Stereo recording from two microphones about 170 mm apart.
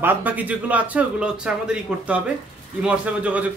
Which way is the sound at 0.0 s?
10° right (ahead or behind).